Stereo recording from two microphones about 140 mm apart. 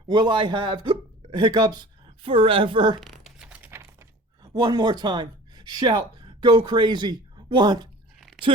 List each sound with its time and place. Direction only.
0.1 s speech: 35° right (ahead or behind)
3.0 s crumpling: centre (ahead or behind)
4.4 s speech: 30° right (ahead or behind)